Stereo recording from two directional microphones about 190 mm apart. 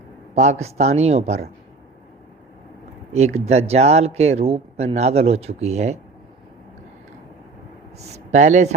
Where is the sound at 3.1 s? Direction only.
35° right (ahead or behind).